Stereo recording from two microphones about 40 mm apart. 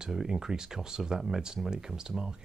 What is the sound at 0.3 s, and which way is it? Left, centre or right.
Speech, centre.